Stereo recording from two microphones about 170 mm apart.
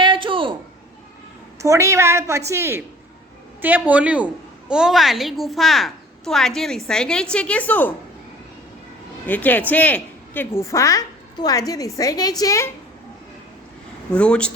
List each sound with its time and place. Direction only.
0.0 s a sound: 30° right (ahead or behind)
1.5 s a woman's voice: 20° right (ahead or behind); by 7.9 s 10° left (ahead or behind)
9.2 s a woman's voice: 10° left (ahead or behind)
14.1 s speech: 5° left (ahead or behind)